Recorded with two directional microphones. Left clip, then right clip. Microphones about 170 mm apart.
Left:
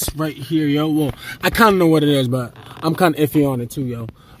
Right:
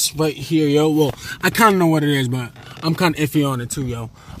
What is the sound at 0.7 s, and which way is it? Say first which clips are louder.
Speech: right 5 dB; 45° left (ahead or behind).